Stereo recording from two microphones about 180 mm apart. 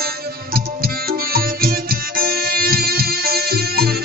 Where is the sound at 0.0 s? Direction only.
55° right (ahead or behind).